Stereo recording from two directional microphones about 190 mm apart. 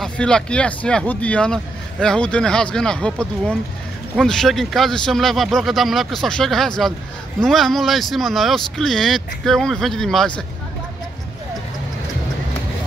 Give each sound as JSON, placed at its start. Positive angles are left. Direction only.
{"t": 0.0, "sound": "speech", "side_deg": 5}